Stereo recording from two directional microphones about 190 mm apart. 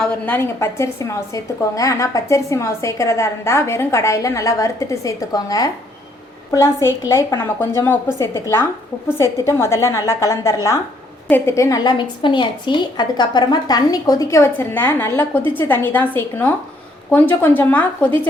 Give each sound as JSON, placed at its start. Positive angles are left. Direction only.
{"t": 0.0, "sound": "a woman's voice", "side_deg": 10}
{"t": 6.8, "sound": "a woman's voice", "side_deg": 15}